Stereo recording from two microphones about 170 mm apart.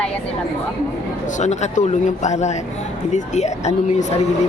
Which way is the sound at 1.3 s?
45° left (ahead or behind).